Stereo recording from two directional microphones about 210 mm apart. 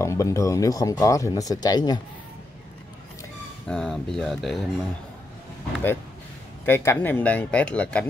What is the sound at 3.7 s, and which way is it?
Speech, 5° left (ahead or behind).